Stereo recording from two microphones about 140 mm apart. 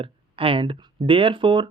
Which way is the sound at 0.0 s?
40° right (ahead or behind).